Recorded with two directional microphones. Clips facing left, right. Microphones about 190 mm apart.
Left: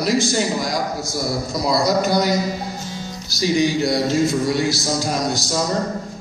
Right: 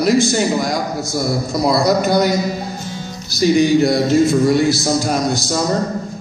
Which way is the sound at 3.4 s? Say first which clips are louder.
Right 6 dB; 55° right (ahead or behind).